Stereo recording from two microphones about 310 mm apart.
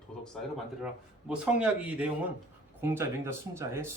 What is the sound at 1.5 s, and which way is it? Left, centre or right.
Speech, centre.